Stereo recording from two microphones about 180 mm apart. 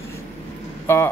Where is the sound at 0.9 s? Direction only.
10° left (ahead or behind).